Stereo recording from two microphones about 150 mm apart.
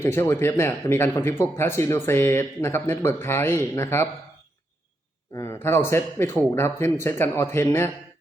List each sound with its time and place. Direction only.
0.0 s speech: 15° left (ahead or behind)
5.3 s speech: 20° left (ahead or behind)